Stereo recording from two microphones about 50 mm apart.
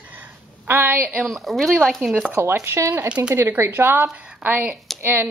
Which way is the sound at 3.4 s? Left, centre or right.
Right.